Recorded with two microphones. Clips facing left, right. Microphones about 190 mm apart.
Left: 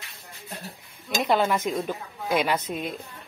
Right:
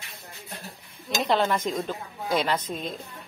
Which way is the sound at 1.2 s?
10° left (ahead or behind).